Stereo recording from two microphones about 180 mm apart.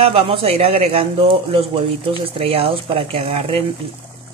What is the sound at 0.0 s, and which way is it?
A man's voice, 30° right (ahead or behind).